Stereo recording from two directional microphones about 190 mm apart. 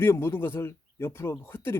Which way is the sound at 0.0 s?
10° left (ahead or behind).